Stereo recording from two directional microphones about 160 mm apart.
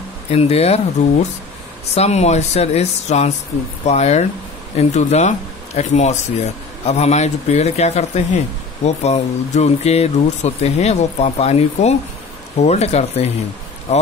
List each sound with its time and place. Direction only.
0.3 s a man's voice: 40° left (ahead or behind)